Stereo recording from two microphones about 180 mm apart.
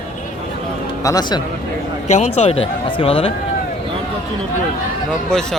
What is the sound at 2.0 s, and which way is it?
Speech, 40° left (ahead or behind).